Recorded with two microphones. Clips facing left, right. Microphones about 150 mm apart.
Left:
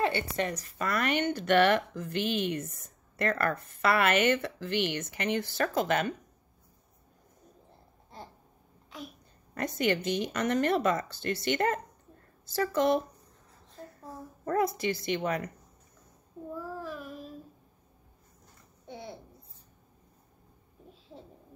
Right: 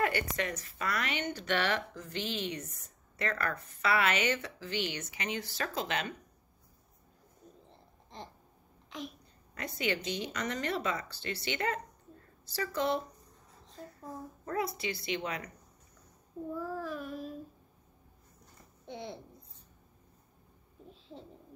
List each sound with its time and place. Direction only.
0.0 s a woman's voice: 30° left (ahead or behind); by 6.1 s 50° left (ahead or behind)
9.5 s a woman's voice: 50° left (ahead or behind)
14.4 s a woman's voice: 45° left (ahead or behind)
16.5 s child singing: centre (ahead or behind)
18.9 s babbling: 5° left (ahead or behind)